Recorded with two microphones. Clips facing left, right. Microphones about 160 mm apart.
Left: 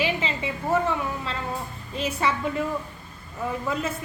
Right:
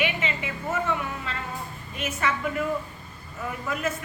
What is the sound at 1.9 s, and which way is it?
Speech, 30° left (ahead or behind).